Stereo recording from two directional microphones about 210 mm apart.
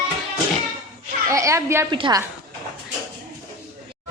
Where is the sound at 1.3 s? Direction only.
15° right (ahead or behind).